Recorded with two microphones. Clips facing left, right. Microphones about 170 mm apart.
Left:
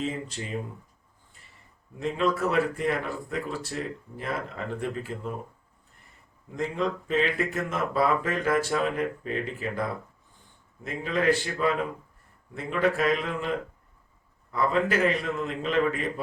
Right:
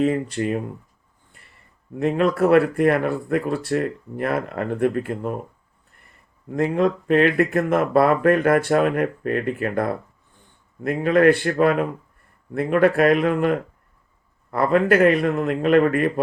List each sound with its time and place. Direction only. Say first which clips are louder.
0.0 s speech: right 11 dB; 60° right (ahead or behind)
2.0 s speech: right 7 dB; 60° right (ahead or behind)
6.5 s speech: right 9 dB; 60° right (ahead or behind)